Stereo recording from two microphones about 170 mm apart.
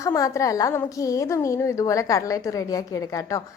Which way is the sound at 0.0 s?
20° left (ahead or behind).